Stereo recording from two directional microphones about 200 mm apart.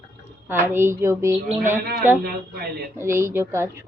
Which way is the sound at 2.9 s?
15° right (ahead or behind).